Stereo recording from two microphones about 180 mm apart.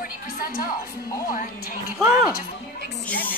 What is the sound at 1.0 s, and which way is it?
Speech, 20° left (ahead or behind).